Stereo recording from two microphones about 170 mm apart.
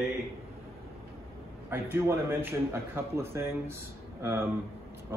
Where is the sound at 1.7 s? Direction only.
15° right (ahead or behind).